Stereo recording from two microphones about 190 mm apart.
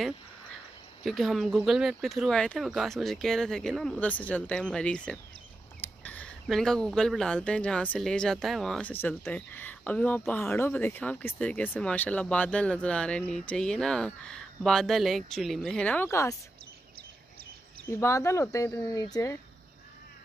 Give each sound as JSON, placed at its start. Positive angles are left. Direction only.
{"t": 1.0, "sound": "speech", "side_deg": 0}
{"t": 18.0, "sound": "speech", "side_deg": 15}